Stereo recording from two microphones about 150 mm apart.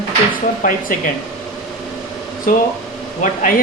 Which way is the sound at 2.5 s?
65° left (ahead or behind).